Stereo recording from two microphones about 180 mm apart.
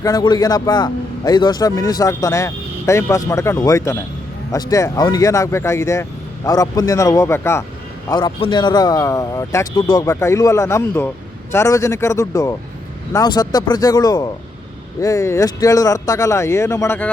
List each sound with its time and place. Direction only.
0.0 s a man's voice: 20° left (ahead or behind)
8.1 s a man's voice: 25° left (ahead or behind)